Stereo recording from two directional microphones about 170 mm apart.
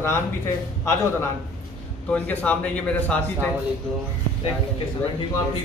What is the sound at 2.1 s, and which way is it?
A man's voice, 5° left (ahead or behind).